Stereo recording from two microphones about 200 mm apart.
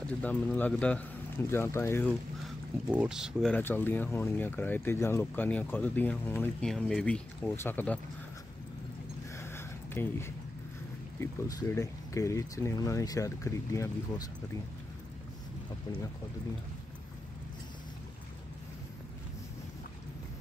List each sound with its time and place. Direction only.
0.2 s speech: 10° left (ahead or behind)
2.9 s speech: 5° right (ahead or behind)
9.4 s a sound: 10° left (ahead or behind)
11.1 s speech: 15° left (ahead or behind)